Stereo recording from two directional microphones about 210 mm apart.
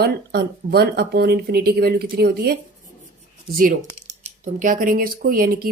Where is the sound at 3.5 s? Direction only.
40° right (ahead or behind).